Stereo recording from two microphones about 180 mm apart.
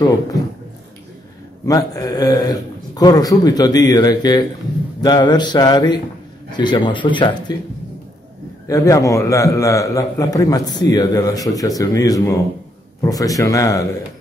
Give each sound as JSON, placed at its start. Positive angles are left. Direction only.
{"t": 0.3, "sound": "a man's voice", "side_deg": 20}
{"t": 1.7, "sound": "a man's voice", "side_deg": 20}
{"t": 8.6, "sound": "a man's voice", "side_deg": 20}